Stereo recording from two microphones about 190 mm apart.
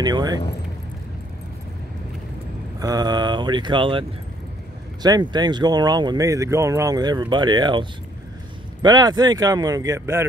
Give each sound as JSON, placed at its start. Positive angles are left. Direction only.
{"t": 0.0, "sound": "speech", "side_deg": -20}
{"t": 2.8, "sound": "speech", "side_deg": -20}
{"t": 5.0, "sound": "speech", "side_deg": -20}
{"t": 8.8, "sound": "speech", "side_deg": -20}